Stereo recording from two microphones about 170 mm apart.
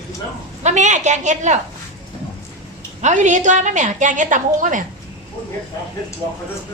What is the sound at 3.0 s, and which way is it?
A woman's voice, 45° right (ahead or behind).